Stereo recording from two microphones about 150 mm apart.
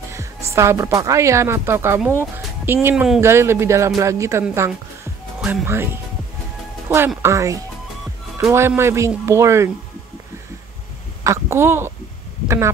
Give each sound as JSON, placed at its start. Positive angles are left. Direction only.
{"t": 0.1, "sound": "speech", "side_deg": -20}
{"t": 7.2, "sound": "speech", "side_deg": -20}
{"t": 11.2, "sound": "speech", "side_deg": -15}